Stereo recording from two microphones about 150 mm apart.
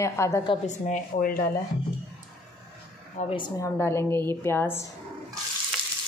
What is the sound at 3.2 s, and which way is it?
Speech, 50° left (ahead or behind).